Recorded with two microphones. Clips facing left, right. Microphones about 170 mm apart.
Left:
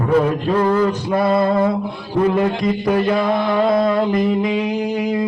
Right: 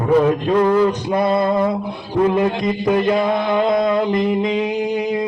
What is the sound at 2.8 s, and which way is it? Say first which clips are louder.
Music: right 2 dB; 20° right (ahead or behind).